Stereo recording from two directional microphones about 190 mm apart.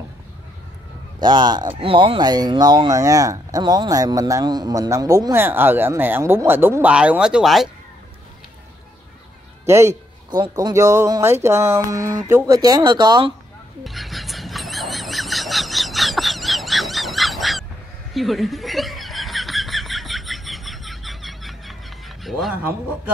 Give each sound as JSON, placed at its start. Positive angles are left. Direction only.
{"t": 1.2, "sound": "speech", "side_deg": -25}
{"t": 9.7, "sound": "a sound", "side_deg": -15}
{"t": 10.4, "sound": "speech", "side_deg": -20}
{"t": 13.8, "sound": "squeal", "side_deg": 0}
{"t": 18.1, "sound": "snicker", "side_deg": 0}